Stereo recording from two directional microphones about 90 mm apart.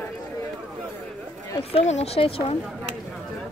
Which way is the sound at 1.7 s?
90° left.